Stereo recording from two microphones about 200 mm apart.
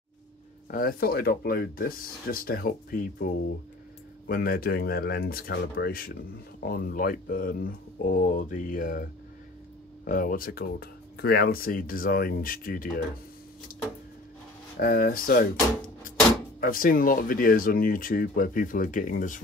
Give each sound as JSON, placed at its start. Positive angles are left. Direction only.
{"t": 0.7, "sound": "speech", "side_deg": 45}
{"t": 14.8, "sound": "speech", "side_deg": 45}
{"t": 16.5, "sound": "speech", "side_deg": 45}